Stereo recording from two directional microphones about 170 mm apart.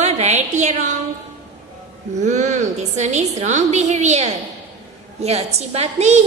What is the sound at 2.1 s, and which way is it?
A woman's voice, 45° right (ahead or behind).